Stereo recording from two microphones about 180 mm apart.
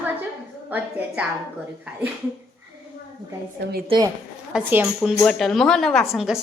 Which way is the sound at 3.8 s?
25° right (ahead or behind).